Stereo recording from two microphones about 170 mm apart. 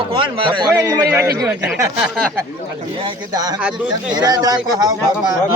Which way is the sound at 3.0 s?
25° right (ahead or behind).